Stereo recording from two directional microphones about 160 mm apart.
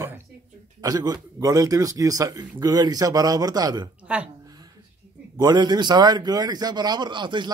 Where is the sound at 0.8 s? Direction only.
25° right (ahead or behind).